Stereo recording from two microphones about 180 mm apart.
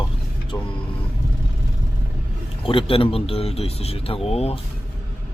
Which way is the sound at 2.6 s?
30° left (ahead or behind).